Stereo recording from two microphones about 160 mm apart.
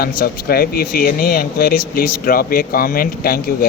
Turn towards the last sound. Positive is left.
turn(degrees=65)  # may be behind; listen again after turning